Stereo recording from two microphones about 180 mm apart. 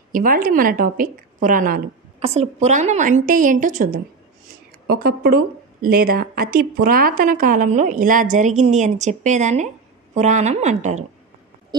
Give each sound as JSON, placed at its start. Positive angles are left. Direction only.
{"t": 0.1, "sound": "a woman's voice", "side_deg": -50}